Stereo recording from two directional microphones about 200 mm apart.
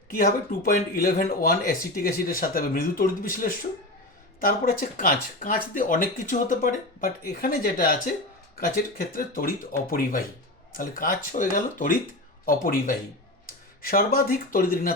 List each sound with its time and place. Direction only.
0.2 s speech: 45° left (ahead or behind)